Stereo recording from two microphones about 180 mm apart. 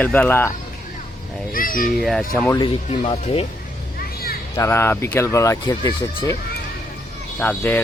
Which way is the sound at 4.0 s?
60° left (ahead or behind).